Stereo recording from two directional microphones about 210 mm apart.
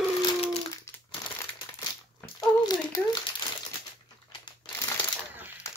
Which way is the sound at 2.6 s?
20° left (ahead or behind).